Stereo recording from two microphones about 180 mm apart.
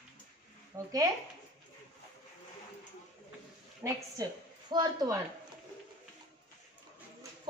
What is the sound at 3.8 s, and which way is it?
A woman's voice, 20° right (ahead or behind).